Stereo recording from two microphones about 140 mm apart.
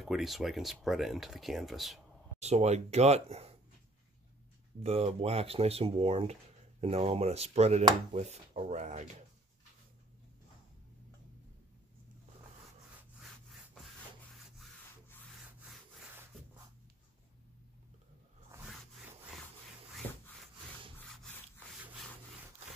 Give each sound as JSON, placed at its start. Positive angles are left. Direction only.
{"t": 0.0, "sound": "speech", "side_deg": 0}
{"t": 2.4, "sound": "speech", "side_deg": -50}
{"t": 4.8, "sound": "speech", "side_deg": -45}
{"t": 15.6, "sound": "wood", "side_deg": 0}